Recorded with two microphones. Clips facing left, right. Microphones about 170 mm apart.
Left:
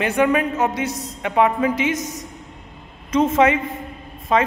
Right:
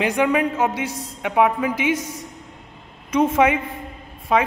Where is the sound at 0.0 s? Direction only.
10° right (ahead or behind).